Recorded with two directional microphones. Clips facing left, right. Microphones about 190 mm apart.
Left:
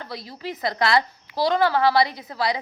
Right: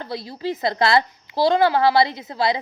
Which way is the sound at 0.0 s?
30° right (ahead or behind).